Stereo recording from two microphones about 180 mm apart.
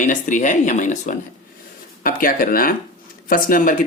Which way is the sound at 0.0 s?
45° left (ahead or behind).